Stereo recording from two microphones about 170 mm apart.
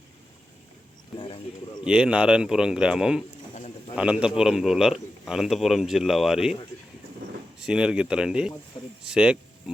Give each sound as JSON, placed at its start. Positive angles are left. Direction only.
{"t": 1.2, "sound": "speech", "side_deg": 30}
{"t": 1.8, "sound": "a man's voice", "side_deg": -5}
{"t": 3.5, "sound": "a sound", "side_deg": 40}
{"t": 3.9, "sound": "a man's voice", "side_deg": -5}
{"t": 7.6, "sound": "a man's voice", "side_deg": -5}